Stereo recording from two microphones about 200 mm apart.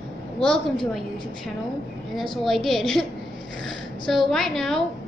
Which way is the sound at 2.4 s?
Centre (ahead or behind).